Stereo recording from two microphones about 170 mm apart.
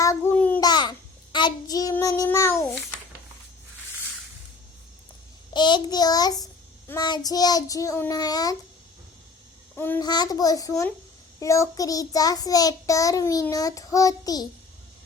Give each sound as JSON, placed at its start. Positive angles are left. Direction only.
{"t": 0.0, "sound": "babbling", "side_deg": 15}
{"t": 0.6, "sound": "child singing", "side_deg": 25}
{"t": 5.5, "sound": "child singing", "side_deg": 25}
{"t": 9.7, "sound": "a child's voice", "side_deg": 10}
{"t": 10.0, "sound": "child singing", "side_deg": 25}